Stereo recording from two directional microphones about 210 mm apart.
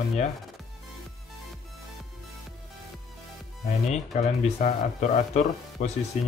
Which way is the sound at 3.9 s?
30° left (ahead or behind).